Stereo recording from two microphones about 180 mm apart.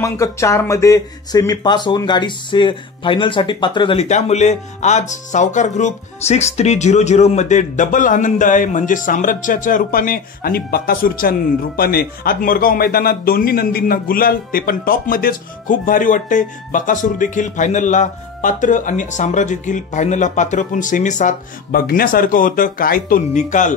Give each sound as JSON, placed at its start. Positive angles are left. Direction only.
{"t": 0.0, "sound": "speech", "side_deg": 15}